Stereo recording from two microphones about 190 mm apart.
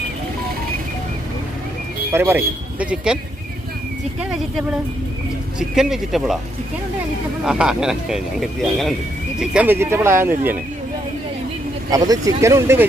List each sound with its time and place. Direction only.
2.1 s speech: 10° right (ahead or behind)
4.2 s speech: 5° right (ahead or behind)
7.4 s speech: 5° right (ahead or behind)
11.9 s speech: 20° right (ahead or behind)